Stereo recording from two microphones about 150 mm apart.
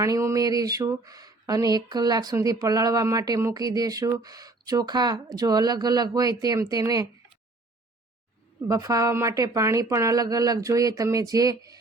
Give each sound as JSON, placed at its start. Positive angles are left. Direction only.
{"t": 0.0, "sound": "speech", "side_deg": -20}
{"t": 8.6, "sound": "speech", "side_deg": -25}